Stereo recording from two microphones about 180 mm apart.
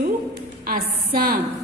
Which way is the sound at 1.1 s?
55° right (ahead or behind).